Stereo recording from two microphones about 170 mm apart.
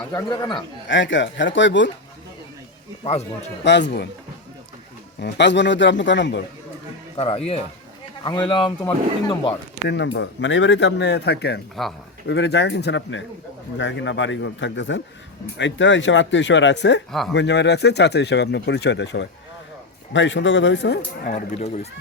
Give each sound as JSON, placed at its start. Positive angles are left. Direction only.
{"t": 0.1, "sound": "speech", "side_deg": 25}
{"t": 0.9, "sound": "speech", "side_deg": 90}
{"t": 3.0, "sound": "speech", "side_deg": 40}
{"t": 3.6, "sound": "speech", "side_deg": 90}
{"t": 5.2, "sound": "speech", "side_deg": 90}
{"t": 7.2, "sound": "speech", "side_deg": 35}
{"t": 9.9, "sound": "speech", "side_deg": 90}
{"t": 12.3, "sound": "speech", "side_deg": 90}
{"t": 21.2, "sound": "speech", "side_deg": 40}